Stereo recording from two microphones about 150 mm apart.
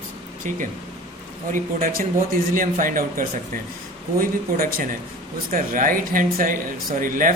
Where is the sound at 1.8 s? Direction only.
70° right (ahead or behind).